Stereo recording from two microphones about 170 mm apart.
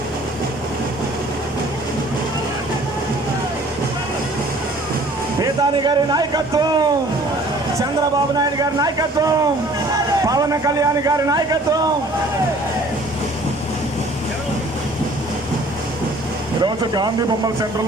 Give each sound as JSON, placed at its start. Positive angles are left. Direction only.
{"t": 5.4, "sound": "speech", "side_deg": -25}
{"t": 8.4, "sound": "a man's voice", "side_deg": -20}
{"t": 16.6, "sound": "a man's voice", "side_deg": -25}